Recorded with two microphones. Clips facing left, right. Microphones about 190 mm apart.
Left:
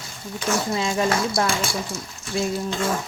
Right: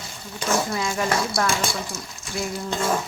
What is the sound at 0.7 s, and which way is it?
Speech, 25° left (ahead or behind).